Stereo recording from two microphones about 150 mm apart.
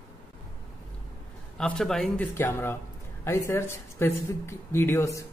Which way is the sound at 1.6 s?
5° left (ahead or behind).